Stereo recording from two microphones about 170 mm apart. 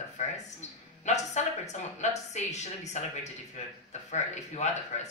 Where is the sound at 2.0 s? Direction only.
40° left (ahead or behind).